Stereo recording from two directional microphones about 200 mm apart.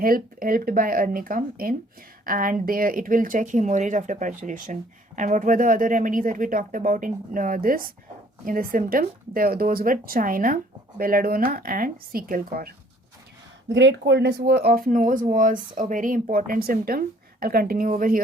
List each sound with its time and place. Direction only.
0.0 s speech: 45° right (ahead or behind)
13.7 s speech: 60° right (ahead or behind); by 18.2 s 45° right (ahead or behind)